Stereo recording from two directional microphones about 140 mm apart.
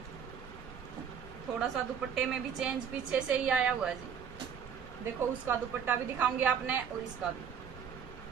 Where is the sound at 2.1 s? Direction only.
5° right (ahead or behind).